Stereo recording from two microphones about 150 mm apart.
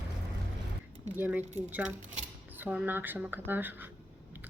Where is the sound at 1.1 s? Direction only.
10° right (ahead or behind).